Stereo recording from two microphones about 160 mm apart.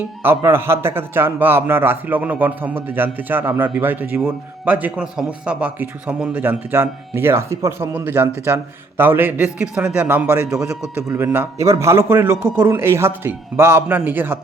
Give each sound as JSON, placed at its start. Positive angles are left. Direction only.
{"t": 0.2, "sound": "a man's voice", "side_deg": -15}